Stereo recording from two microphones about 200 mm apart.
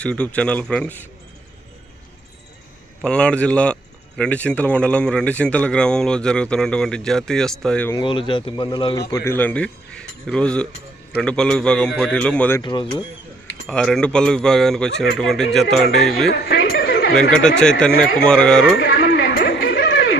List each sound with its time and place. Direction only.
0.0 s speech: 5° left (ahead or behind)
3.0 s speech: 5° left (ahead or behind)
7.9 s speech: 25° left (ahead or behind); by 12.6 s 10° left (ahead or behind)
12.6 s speech: 20° left (ahead or behind)
13.7 s speech: centre (ahead or behind)
16.3 s a sound: 65° left (ahead or behind)
17.2 s speech: 5° left (ahead or behind)
18.8 s a sound: 75° left (ahead or behind)
19.0 s a sound: 50° left (ahead or behind)